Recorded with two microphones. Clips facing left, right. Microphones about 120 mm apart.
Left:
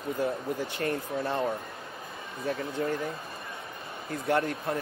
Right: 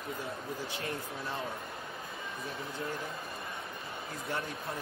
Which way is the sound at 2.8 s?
55° left (ahead or behind).